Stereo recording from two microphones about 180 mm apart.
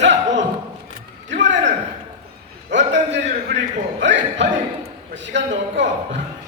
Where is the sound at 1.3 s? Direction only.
90° right.